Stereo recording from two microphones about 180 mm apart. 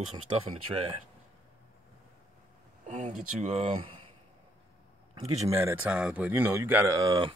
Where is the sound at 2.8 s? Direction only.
40° right (ahead or behind).